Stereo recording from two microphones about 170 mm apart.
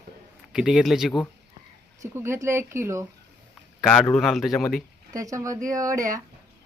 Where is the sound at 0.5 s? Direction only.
5° right (ahead or behind).